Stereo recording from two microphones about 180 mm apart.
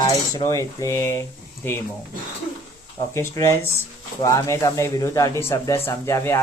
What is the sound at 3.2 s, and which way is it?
Cutlery, 15° left (ahead or behind).